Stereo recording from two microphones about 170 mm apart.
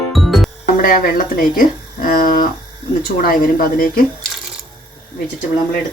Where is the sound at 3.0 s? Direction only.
60° left (ahead or behind).